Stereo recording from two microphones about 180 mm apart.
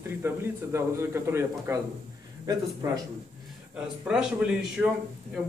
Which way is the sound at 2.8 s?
20° right (ahead or behind).